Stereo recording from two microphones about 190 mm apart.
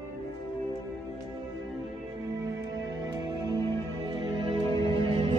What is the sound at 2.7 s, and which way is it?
Music, 20° right (ahead or behind).